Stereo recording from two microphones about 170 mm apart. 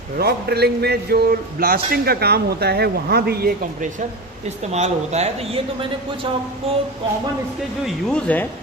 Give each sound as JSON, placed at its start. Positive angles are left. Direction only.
{"t": 0.2, "sound": "a man's voice", "side_deg": -70}
{"t": 4.4, "sound": "speech", "side_deg": -40}
{"t": 6.7, "sound": "speech", "side_deg": -35}
{"t": 7.9, "sound": "speech", "side_deg": 5}